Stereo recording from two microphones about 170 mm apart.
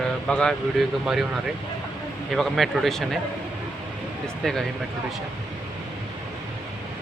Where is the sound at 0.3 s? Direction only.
5° left (ahead or behind).